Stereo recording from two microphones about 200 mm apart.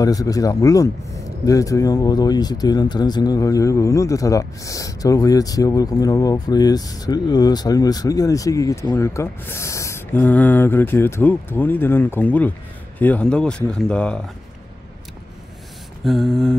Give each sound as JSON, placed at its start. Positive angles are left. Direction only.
{"t": 0.0, "sound": "speech", "side_deg": 15}
{"t": 16.0, "sound": "speech", "side_deg": 0}